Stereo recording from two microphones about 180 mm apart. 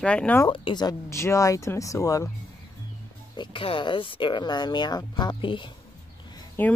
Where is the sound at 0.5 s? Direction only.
25° left (ahead or behind).